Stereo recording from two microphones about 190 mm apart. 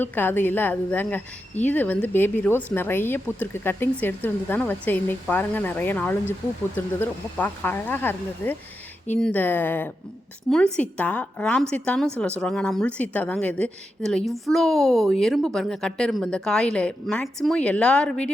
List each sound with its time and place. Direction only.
0.0 s a woman's voice: 10° left (ahead or behind)